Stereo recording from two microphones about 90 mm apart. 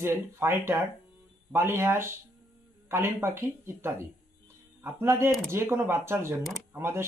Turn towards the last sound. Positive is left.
turn(degrees=-30)  # may be behind; listen again after turning